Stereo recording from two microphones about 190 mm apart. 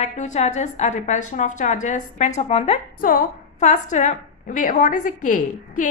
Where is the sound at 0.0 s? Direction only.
35° left (ahead or behind).